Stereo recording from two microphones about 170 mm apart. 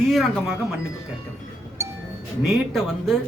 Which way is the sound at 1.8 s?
15° right (ahead or behind).